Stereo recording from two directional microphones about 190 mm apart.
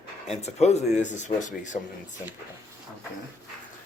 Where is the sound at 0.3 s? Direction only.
35° left (ahead or behind).